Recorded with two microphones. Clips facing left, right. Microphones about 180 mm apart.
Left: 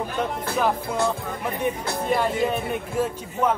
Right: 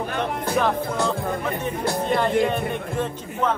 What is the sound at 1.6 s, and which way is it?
Speech, 5° left (ahead or behind).